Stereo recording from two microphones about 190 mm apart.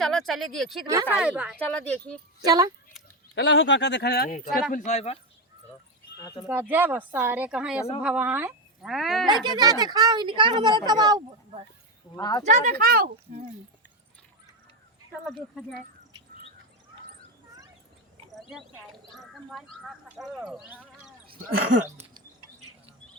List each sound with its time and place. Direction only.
0.0 s speech: centre (ahead or behind)
1.5 s speech: 5° left (ahead or behind)
2.4 s speech: 20° right (ahead or behind)
3.3 s speech: 70° left (ahead or behind); by 4.4 s 50° left (ahead or behind)
4.7 s speech: 40° left (ahead or behind)
6.1 s speech: 20° left (ahead or behind)
6.5 s a woman's voice: 10° right (ahead or behind)
9.5 s speech: 20° right (ahead or behind)
12.1 s speech: 20° left (ahead or behind)
12.5 s speech: 45° right (ahead or behind)
18.3 s a sound: centre (ahead or behind)
19.1 s speech: centre (ahead or behind)
21.2 s speech: 50° right (ahead or behind)